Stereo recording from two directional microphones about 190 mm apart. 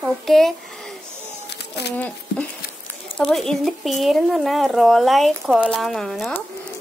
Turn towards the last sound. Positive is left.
turn(degrees=0)  # may be behind; listen again after turning